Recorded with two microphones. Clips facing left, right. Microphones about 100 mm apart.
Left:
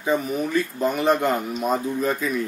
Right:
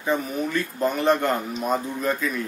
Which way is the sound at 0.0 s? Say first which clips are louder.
Left 2 dB; 5° left (ahead or behind).